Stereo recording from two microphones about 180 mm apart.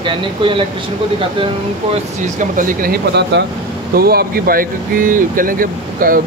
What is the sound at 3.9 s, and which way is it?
Speech, 55° right (ahead or behind).